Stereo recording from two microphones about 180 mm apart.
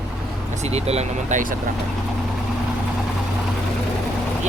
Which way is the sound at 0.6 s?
35° right (ahead or behind).